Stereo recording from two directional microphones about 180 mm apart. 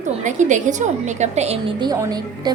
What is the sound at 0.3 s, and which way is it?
A woman's voice, 45° right (ahead or behind).